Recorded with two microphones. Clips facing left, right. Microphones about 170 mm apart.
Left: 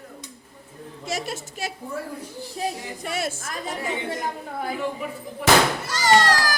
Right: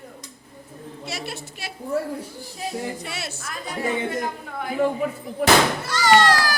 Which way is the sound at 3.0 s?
45° left (ahead or behind).